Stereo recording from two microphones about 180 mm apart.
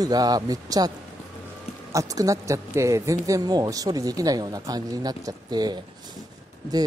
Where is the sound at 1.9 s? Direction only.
20° right (ahead or behind).